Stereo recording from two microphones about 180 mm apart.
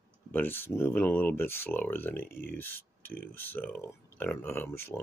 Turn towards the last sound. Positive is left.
turn(degrees=15)  # may be behind; listen again after turning